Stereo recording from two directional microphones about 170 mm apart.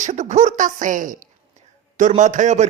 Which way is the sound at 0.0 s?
45° right (ahead or behind).